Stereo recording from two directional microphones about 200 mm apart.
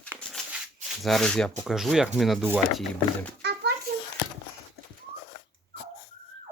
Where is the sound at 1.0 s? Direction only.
Centre (ahead or behind).